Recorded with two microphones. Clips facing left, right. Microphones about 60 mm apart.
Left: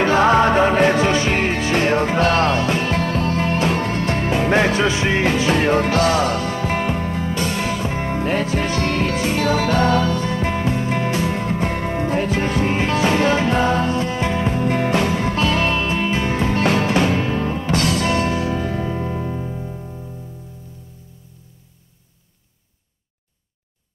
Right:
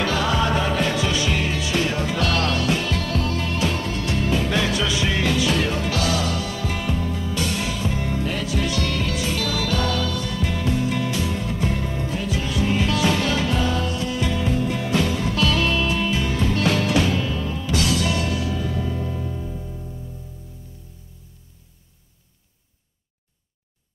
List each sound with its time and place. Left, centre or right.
0.0 s music: left